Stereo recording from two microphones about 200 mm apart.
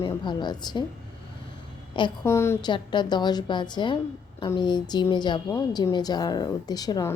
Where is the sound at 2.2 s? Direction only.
15° left (ahead or behind).